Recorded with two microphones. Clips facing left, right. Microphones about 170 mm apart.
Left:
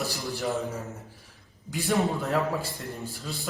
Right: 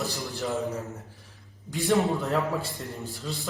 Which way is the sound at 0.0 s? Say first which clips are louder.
Even; 20° right (ahead or behind).